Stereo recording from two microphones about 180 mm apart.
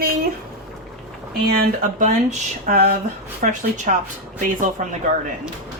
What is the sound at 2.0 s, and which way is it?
A woman's voice, 45° right (ahead or behind).